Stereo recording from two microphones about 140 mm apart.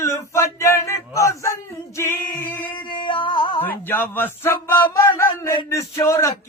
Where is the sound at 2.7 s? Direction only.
35° left (ahead or behind).